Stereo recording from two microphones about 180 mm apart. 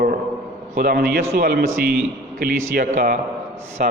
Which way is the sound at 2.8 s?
50° right (ahead or behind).